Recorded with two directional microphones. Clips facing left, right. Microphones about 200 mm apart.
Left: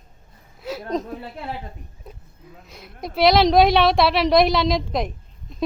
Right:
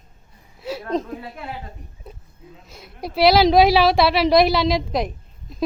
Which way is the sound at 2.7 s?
Centre (ahead or behind).